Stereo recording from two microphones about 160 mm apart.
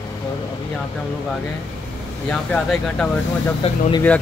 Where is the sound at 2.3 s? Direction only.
5° left (ahead or behind).